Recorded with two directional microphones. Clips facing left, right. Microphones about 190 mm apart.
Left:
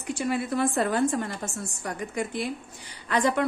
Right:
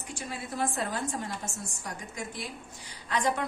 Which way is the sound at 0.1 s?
65° left (ahead or behind).